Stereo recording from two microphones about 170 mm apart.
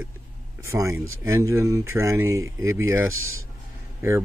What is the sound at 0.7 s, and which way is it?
Speech, 15° right (ahead or behind).